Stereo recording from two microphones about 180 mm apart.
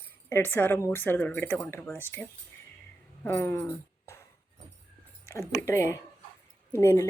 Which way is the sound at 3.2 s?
10° left (ahead or behind).